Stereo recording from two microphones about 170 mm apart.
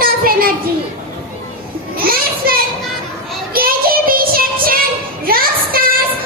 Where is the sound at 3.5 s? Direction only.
60° right (ahead or behind).